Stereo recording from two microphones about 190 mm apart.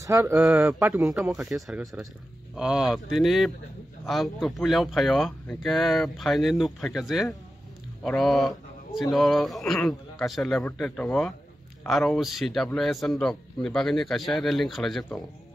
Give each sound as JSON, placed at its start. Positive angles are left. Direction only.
{"t": 0.0, "sound": "a man's voice", "side_deg": -15}